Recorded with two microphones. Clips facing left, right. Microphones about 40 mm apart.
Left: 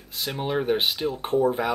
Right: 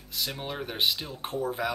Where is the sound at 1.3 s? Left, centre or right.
Left.